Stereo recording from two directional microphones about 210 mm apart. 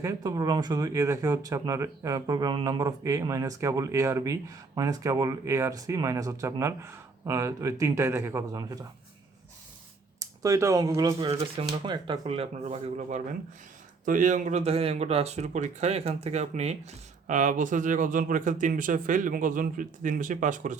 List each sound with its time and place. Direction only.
0.0 s speech: 15° right (ahead or behind)
10.2 s speech: 15° right (ahead or behind)
11.3 s speech: 30° right (ahead or behind)